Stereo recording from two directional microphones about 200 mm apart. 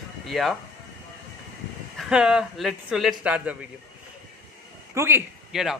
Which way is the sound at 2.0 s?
5° right (ahead or behind).